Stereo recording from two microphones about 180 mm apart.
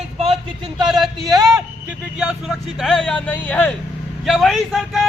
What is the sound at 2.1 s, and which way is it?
Speech, 5° right (ahead or behind).